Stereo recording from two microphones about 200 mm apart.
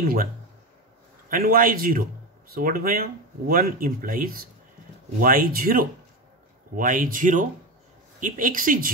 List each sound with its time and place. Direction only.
0.0 s speech: 45° right (ahead or behind)
1.3 s speech: 45° right (ahead or behind)